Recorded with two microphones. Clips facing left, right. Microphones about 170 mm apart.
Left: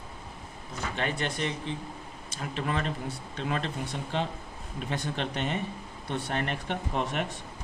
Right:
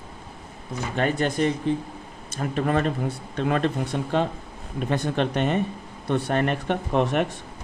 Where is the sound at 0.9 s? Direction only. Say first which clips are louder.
Right 9 dB; 45° right (ahead or behind).